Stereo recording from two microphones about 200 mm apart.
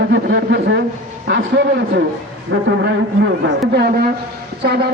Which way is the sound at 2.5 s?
60° right (ahead or behind).